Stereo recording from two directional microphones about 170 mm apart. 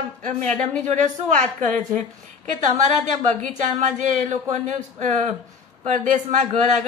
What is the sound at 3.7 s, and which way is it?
A man's voice, 45° right (ahead or behind).